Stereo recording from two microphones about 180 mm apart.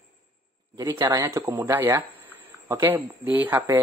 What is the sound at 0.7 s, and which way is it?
Speech, 20° right (ahead or behind).